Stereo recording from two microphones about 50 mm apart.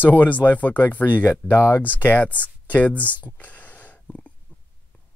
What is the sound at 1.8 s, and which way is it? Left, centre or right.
Speech, left.